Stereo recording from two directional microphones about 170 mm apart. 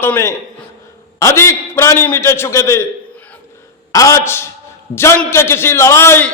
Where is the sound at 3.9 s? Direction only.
20° left (ahead or behind).